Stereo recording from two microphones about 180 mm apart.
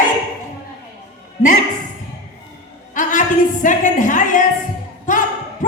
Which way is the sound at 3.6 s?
45° left (ahead or behind).